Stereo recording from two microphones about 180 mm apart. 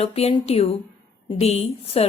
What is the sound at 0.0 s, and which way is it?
Speech, 35° left (ahead or behind).